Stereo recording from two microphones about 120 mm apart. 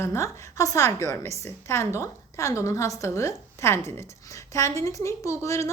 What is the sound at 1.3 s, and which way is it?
Speech, 65° right (ahead or behind).